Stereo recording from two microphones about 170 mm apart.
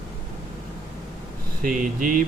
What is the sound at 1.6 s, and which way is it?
Speech, 50° right (ahead or behind).